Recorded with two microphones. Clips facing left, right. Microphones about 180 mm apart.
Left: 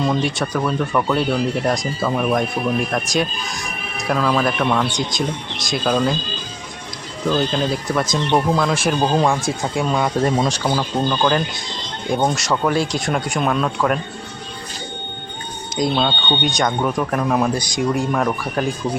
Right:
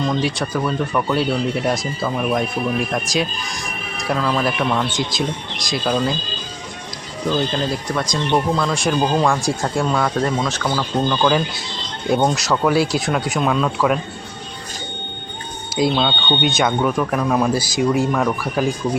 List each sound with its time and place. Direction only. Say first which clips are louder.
0.0 s speech: left 1 dB; 5° left (ahead or behind)
7.3 s speech: left 1 dB; centre (ahead or behind)
9.0 s speech: left 1 dB; 20° left (ahead or behind)
9.3 s speech: right 1 dB; centre (ahead or behind)
9.9 s speech: left 1 dB; 15° left (ahead or behind)
11.2 s speech: right 1 dB; centre (ahead or behind)
15.7 s speech: right 1 dB; centre (ahead or behind)